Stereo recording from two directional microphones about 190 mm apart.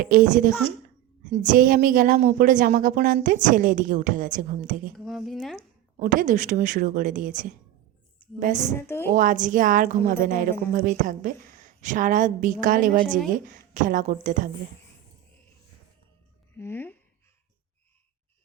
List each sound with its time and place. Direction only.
0.0 s a woman's voice: 50° right (ahead or behind)
4.9 s speech: centre (ahead or behind)
6.0 s a woman's voice: 45° right (ahead or behind)
13.1 s speech: centre (ahead or behind)
13.3 s a woman's voice: 45° right (ahead or behind)
16.6 s speech: 10° left (ahead or behind)